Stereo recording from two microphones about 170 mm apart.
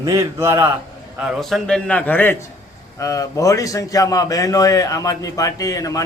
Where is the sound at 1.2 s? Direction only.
Centre (ahead or behind).